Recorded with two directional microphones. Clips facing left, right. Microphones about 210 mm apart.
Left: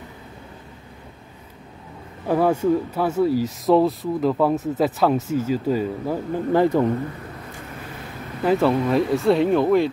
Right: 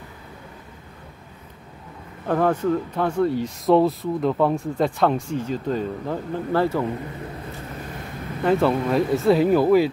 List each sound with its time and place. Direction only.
2.2 s speech: 10° left (ahead or behind)
8.5 s speech: centre (ahead or behind)